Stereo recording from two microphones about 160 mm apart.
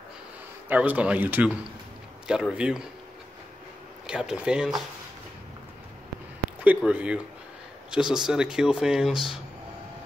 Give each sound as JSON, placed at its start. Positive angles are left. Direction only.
{"t": 0.7, "sound": "speech", "side_deg": -10}
{"t": 4.1, "sound": "speech", "side_deg": -5}
{"t": 6.6, "sound": "speech", "side_deg": -10}